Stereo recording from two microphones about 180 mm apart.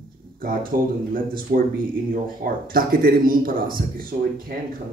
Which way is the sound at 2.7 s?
55° right (ahead or behind).